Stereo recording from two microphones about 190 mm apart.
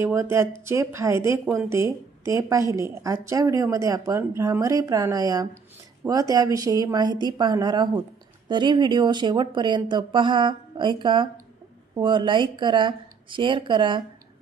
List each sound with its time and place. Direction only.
0.0 s a woman's voice: 15° right (ahead or behind)
1.4 s speech: centre (ahead or behind)
1.7 s a woman's voice: 15° right (ahead or behind)